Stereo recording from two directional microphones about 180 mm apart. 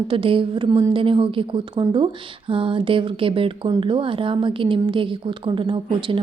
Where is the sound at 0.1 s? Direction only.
30° right (ahead or behind).